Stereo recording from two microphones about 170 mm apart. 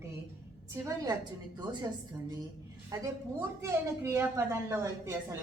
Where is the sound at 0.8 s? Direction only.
15° right (ahead or behind).